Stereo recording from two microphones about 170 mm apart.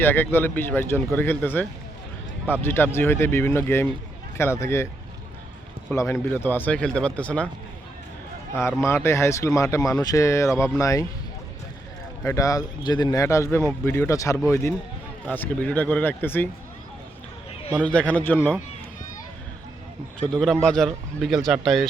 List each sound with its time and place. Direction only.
0.0 s a man's voice: 10° left (ahead or behind)
5.9 s a man's voice: 15° left (ahead or behind)
9.0 s a man's voice: 15° left (ahead or behind)
12.2 s a man's voice: 15° left (ahead or behind)
17.8 s a man's voice: 10° left (ahead or behind)
20.3 s a man's voice: 5° left (ahead or behind)